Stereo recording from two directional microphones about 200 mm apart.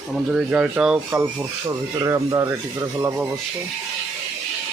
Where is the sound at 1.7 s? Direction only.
15° right (ahead or behind).